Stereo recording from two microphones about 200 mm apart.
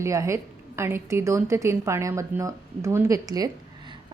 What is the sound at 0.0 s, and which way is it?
A woman's voice, 15° right (ahead or behind).